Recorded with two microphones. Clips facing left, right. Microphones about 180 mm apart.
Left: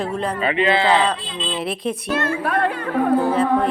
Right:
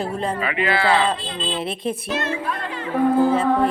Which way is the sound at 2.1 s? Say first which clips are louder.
Left 4 dB; 55° left (ahead or behind).